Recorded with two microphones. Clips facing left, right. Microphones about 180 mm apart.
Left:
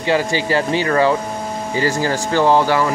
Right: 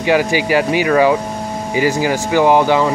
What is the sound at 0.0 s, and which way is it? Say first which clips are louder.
Speech: right 3 dB; 15° right (ahead or behind).